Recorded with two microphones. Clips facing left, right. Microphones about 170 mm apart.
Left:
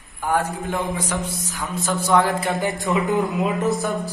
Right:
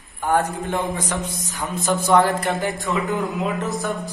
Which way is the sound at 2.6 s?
15° left (ahead or behind).